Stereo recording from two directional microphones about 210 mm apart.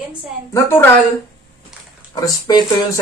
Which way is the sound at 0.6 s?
10° left (ahead or behind).